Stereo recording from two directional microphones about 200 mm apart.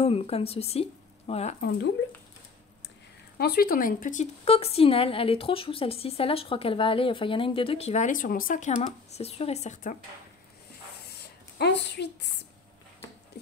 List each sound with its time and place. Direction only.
0.0 s speech: 30° left (ahead or behind)
1.6 s speech: 50° left (ahead or behind)
3.3 s a woman's voice: 50° left (ahead or behind)
11.1 s a sound: 55° left (ahead or behind)